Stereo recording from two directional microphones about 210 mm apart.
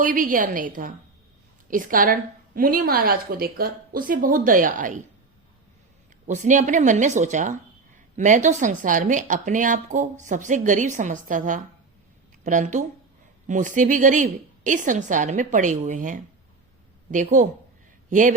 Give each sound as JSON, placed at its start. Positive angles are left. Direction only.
{"t": 0.0, "sound": "speech", "side_deg": -40}
{"t": 6.2, "sound": "speech", "side_deg": -35}